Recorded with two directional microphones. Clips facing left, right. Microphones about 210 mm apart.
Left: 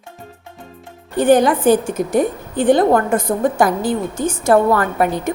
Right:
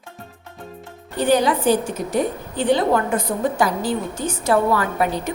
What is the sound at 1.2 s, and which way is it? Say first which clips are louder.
A woman's voice: left 5 dB; 50° left (ahead or behind).